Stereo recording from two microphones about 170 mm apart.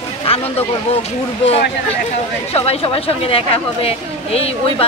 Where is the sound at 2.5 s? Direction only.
35° left (ahead or behind).